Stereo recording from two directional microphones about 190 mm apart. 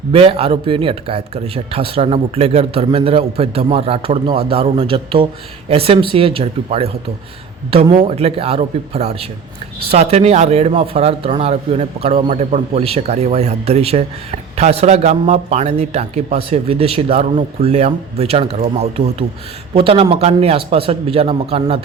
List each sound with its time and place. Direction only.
0.1 s speech: 30° right (ahead or behind)